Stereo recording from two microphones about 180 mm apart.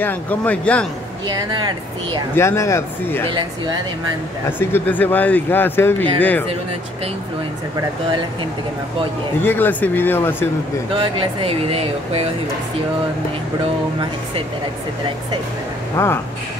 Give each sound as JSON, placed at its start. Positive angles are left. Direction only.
{"t": 0.0, "sound": "speech", "side_deg": 10}
{"t": 1.3, "sound": "speech", "side_deg": -25}
{"t": 2.3, "sound": "speech", "side_deg": 15}
{"t": 3.3, "sound": "speech", "side_deg": -25}
{"t": 4.5, "sound": "speech", "side_deg": 10}
{"t": 9.4, "sound": "speech", "side_deg": 10}
{"t": 11.0, "sound": "speech", "side_deg": -30}
{"t": 16.0, "sound": "speech", "side_deg": 15}